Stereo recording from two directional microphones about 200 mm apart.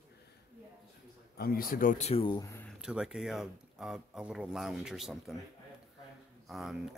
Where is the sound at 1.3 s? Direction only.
50° left (ahead or behind); by 2.7 s 15° left (ahead or behind).